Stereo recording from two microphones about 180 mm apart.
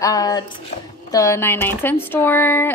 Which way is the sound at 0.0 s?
20° left (ahead or behind).